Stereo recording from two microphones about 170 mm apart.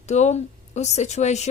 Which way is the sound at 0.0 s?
40° left (ahead or behind).